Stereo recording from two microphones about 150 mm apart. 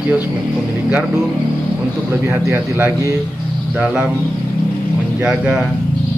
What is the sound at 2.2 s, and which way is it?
Speech, 15° right (ahead or behind).